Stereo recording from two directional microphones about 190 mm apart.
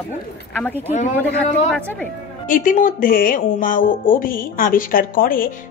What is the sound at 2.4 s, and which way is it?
Speech, 45° left (ahead or behind).